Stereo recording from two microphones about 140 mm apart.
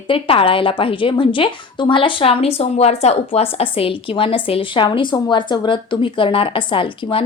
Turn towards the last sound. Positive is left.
turn(degrees=35)  # may be behind; listen again after turning